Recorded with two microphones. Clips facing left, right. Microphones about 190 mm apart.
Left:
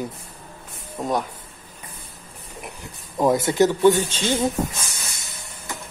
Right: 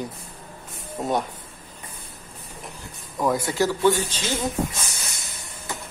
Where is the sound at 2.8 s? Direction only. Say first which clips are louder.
Left 4 dB; 25° left (ahead or behind).